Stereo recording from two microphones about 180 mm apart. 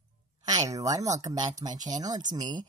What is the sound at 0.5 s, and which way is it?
Speech, 20° right (ahead or behind).